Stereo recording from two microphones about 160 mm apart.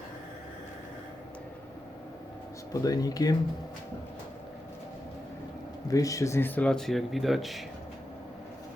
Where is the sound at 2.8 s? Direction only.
25° left (ahead or behind).